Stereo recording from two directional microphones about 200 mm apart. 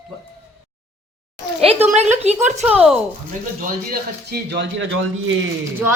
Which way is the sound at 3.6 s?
50° right (ahead or behind).